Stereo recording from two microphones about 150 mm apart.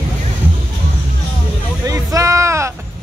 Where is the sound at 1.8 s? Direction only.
20° right (ahead or behind).